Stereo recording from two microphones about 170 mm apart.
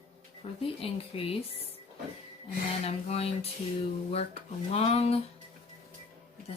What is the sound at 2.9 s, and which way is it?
Speech, 35° left (ahead or behind).